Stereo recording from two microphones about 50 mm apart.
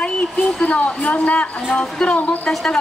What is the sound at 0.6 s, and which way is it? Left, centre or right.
Speech, left.